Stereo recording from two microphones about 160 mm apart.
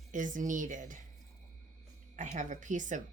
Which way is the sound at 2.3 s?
50° right (ahead or behind).